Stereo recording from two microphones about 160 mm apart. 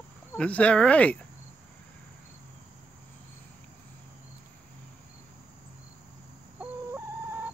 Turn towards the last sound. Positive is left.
turn(degrees=-15)  # may be behind; listen again after turning